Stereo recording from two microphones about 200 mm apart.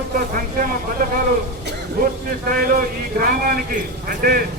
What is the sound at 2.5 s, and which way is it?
Speech, 45° right (ahead or behind).